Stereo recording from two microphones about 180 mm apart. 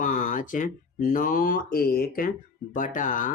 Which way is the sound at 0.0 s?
45° left (ahead or behind).